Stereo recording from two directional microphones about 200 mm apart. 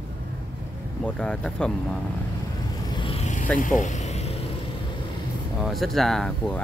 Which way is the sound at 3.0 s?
30° left (ahead or behind).